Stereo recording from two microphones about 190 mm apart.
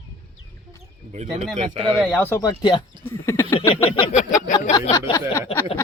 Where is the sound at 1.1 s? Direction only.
40° right (ahead or behind).